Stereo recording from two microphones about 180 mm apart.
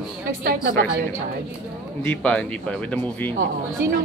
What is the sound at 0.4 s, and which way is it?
Speech, 50° right (ahead or behind).